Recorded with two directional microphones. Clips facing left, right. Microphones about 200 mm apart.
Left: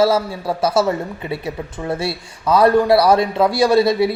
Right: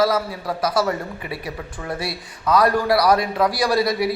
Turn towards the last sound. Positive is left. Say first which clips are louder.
# left 6 dB
turn(degrees=25)  # may be behind; listen again after turning